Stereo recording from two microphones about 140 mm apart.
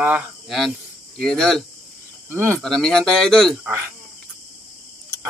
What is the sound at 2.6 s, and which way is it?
Speech, centre (ahead or behind).